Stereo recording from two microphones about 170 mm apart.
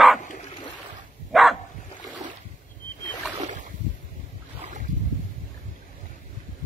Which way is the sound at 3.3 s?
45° right (ahead or behind).